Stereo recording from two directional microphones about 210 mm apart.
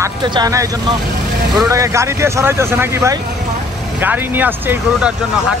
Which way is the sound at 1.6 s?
15° right (ahead or behind).